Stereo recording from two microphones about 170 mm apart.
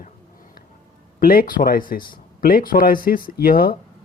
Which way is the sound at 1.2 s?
60° left (ahead or behind).